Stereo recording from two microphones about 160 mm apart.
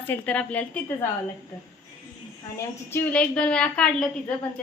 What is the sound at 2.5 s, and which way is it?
A woman's voice, 15° left (ahead or behind).